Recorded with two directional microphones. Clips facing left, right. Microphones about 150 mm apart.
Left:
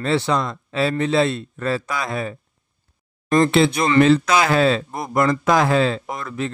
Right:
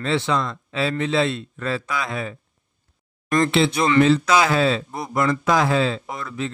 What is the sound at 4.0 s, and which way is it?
Speech, 55° left (ahead or behind).